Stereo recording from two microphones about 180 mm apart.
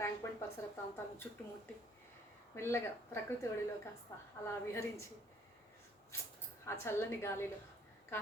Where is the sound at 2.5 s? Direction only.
15° left (ahead or behind).